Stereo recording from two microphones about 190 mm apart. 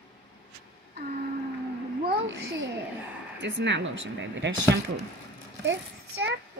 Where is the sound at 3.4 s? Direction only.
70° right (ahead or behind).